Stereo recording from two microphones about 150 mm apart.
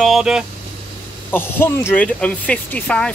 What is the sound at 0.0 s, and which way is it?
Speech, 5° right (ahead or behind).